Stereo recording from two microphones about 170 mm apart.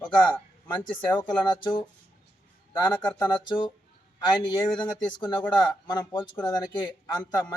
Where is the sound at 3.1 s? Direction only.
25° left (ahead or behind).